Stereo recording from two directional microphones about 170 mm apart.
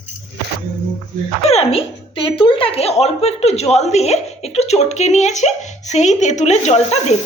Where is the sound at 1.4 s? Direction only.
35° left (ahead or behind).